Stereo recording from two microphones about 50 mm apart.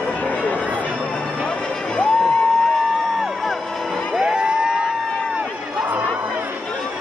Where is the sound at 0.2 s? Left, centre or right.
Left.